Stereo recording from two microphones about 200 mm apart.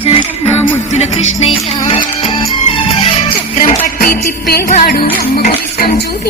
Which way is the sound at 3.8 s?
45° left (ahead or behind).